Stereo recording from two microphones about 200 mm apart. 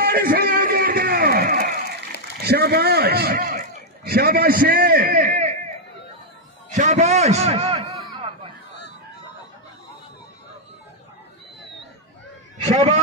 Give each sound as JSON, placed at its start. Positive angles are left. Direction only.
{"t": 0.0, "sound": "a sound", "side_deg": -50}
{"t": 2.4, "sound": "a man's voice", "side_deg": -55}
{"t": 6.7, "sound": "a man's voice", "side_deg": -40}
{"t": 12.6, "sound": "a man's voice", "side_deg": -35}